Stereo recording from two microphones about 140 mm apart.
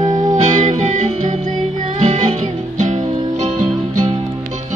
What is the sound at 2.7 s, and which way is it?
Music, 60° right (ahead or behind).